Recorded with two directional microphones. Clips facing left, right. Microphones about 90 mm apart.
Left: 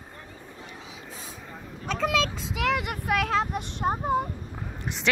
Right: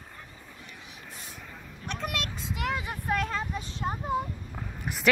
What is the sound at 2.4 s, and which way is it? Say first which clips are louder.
Speech: left 5 dB; 90° left.